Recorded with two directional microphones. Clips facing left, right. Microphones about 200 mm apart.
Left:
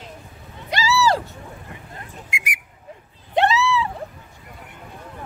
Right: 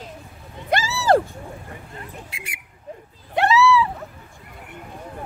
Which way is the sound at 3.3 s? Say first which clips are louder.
Right 2 dB; 20° left (ahead or behind).